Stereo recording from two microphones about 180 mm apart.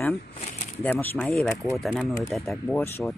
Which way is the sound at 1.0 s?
10° left (ahead or behind).